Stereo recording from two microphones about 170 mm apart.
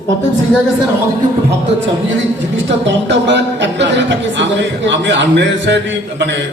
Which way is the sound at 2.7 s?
90° right.